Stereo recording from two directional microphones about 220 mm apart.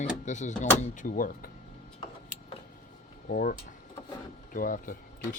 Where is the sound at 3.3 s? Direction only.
40° left (ahead or behind).